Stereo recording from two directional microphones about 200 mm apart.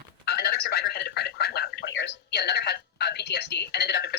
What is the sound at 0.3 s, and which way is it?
Speech, 50° left (ahead or behind).